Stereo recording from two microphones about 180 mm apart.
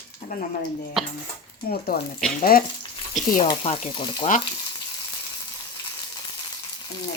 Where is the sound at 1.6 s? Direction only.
55° left (ahead or behind).